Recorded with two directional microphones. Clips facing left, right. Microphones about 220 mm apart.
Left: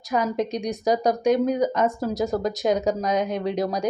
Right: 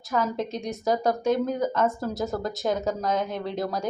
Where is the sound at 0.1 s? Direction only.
15° left (ahead or behind).